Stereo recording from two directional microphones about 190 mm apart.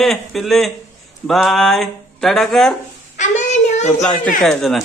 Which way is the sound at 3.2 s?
40° left (ahead or behind).